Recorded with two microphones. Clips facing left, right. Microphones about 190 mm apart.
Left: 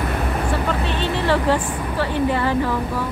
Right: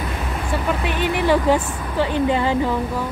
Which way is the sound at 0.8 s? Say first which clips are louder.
Right 5 dB; 10° right (ahead or behind).